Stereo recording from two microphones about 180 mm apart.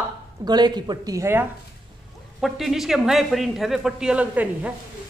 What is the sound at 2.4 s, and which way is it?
Speech, centre (ahead or behind).